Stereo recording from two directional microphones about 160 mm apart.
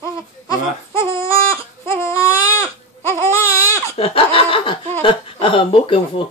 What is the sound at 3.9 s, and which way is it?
Chuckle, 35° left (ahead or behind).